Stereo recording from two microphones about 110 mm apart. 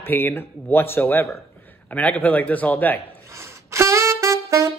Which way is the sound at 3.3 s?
25° right (ahead or behind).